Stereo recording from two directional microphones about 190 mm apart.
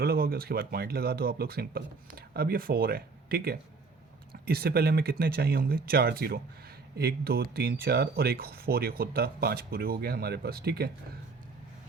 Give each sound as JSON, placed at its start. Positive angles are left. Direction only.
{"t": 0.0, "sound": "speech", "side_deg": -55}